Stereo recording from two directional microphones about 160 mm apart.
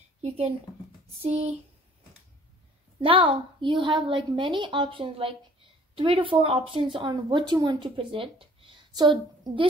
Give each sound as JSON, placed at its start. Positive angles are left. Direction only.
{"t": 0.2, "sound": "speech", "side_deg": -40}
{"t": 3.0, "sound": "speech", "side_deg": -35}